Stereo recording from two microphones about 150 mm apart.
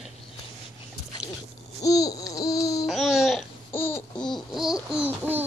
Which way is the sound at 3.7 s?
15° left (ahead or behind).